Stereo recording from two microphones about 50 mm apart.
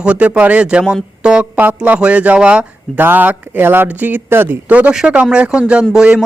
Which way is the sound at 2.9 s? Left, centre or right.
Right.